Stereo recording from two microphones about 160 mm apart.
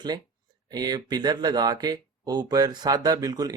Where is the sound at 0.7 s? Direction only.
25° right (ahead or behind).